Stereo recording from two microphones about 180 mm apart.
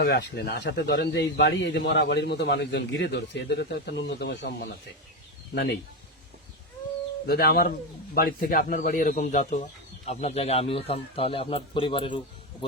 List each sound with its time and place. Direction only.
0.0 s speech: 65° left (ahead or behind)
7.3 s speech: 55° left (ahead or behind); by 12.2 s 30° left (ahead or behind)